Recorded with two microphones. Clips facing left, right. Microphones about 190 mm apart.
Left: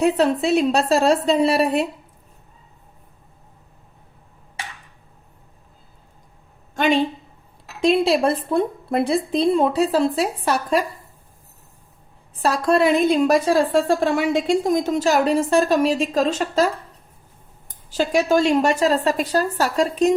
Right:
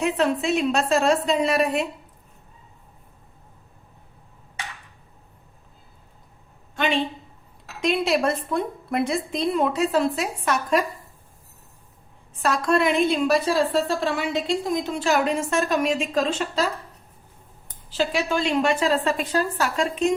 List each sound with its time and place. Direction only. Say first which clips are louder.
0.0 s a woman's voice: left 4 dB; 35° left (ahead or behind)
6.7 s speech: left 5 dB; 40° left (ahead or behind)
7.8 s a woman's voice: left 5 dB; 30° left (ahead or behind)
12.4 s a woman's voice: left 3 dB; 35° left (ahead or behind)
17.9 s a woman's voice: left 6 dB; 45° left (ahead or behind)